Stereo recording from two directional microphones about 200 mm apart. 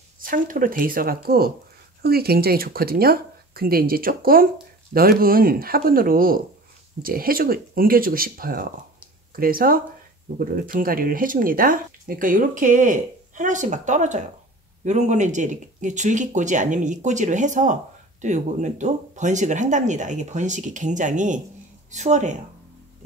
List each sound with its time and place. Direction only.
0.2 s speech: 45° right (ahead or behind)